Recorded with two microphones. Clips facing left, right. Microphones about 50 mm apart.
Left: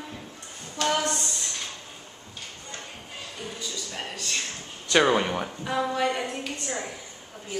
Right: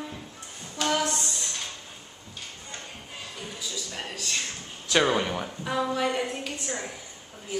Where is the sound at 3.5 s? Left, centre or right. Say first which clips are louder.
Right 1 dB; centre.